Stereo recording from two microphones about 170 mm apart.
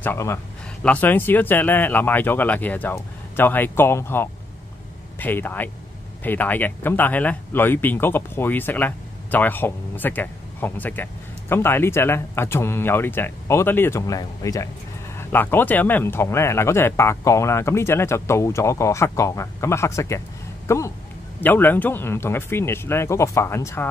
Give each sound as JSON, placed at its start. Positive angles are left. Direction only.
{"t": 0.0, "sound": "speech", "side_deg": 15}